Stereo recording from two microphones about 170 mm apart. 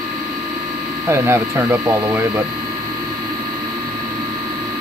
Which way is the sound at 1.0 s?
15° right (ahead or behind).